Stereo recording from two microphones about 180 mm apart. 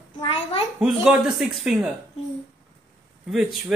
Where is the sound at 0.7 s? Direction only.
5° right (ahead or behind).